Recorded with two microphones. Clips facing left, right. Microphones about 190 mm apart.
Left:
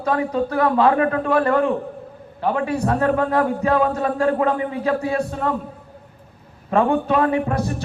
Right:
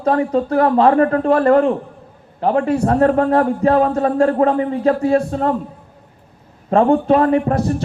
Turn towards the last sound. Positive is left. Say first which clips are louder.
# right 5 dB
turn(degrees=-35)  # may be behind; listen again after turning